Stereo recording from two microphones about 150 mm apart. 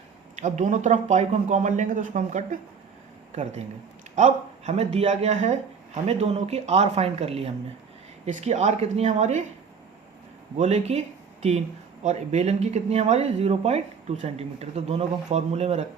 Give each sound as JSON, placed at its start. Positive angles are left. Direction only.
{"t": 0.3, "sound": "speech", "side_deg": -55}
{"t": 4.1, "sound": "speech", "side_deg": -50}
{"t": 10.6, "sound": "speech", "side_deg": -45}
{"t": 12.0, "sound": "speech", "side_deg": -50}